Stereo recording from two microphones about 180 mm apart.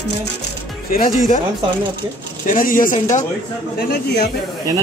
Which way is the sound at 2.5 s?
50° left (ahead or behind).